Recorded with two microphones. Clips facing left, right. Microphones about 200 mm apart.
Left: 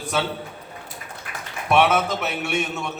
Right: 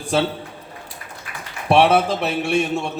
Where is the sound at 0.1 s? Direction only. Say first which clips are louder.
Right 5 dB; 30° right (ahead or behind).